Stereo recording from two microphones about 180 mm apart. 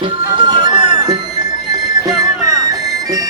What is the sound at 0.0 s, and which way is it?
Music, 25° right (ahead or behind).